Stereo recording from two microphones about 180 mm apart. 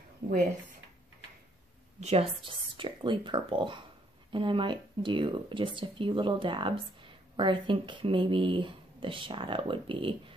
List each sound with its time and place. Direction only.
2.0 s speech: 35° right (ahead or behind)